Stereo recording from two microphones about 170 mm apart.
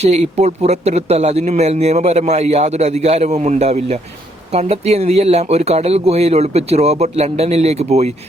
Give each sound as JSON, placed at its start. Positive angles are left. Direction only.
{"t": 0.0, "sound": "speech", "side_deg": -40}